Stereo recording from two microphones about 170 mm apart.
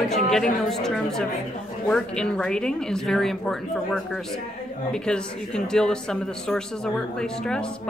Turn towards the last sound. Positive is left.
turn(degrees=5)  # may be behind; listen again after turning